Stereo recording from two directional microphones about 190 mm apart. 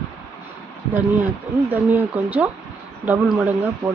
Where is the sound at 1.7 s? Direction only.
10° right (ahead or behind).